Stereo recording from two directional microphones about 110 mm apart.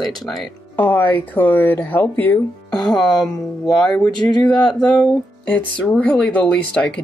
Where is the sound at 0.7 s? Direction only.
15° left (ahead or behind).